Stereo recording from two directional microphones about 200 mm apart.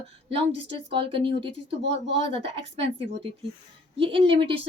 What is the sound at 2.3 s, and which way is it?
Speech, 30° right (ahead or behind).